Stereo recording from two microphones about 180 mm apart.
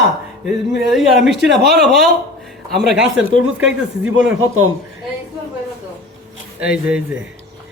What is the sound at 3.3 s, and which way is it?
Speech, 90° right.